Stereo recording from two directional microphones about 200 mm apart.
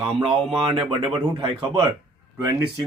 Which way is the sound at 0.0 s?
30° right (ahead or behind).